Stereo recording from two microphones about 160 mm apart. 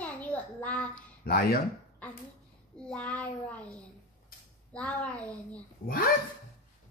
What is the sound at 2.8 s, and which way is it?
Speech, 10° left (ahead or behind).